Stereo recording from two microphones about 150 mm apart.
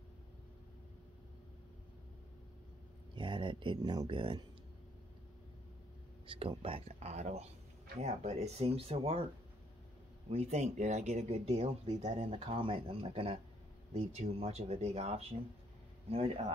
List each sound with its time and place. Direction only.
3.2 s speech: 35° right (ahead or behind)
6.2 s speech: 35° right (ahead or behind)
10.3 s speech: 45° right (ahead or behind)